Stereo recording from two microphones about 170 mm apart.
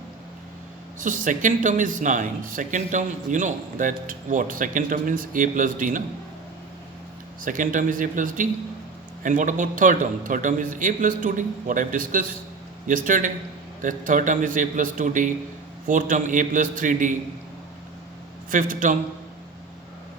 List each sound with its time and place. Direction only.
0.9 s speech: 50° right (ahead or behind)
7.4 s speech: 50° right (ahead or behind)
18.5 s speech: 50° right (ahead or behind)